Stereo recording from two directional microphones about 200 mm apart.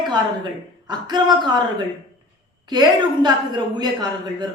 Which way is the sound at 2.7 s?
20° right (ahead or behind).